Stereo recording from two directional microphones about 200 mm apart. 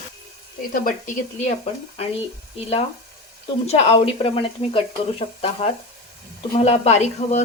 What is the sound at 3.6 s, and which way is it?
Speech, 30° left (ahead or behind).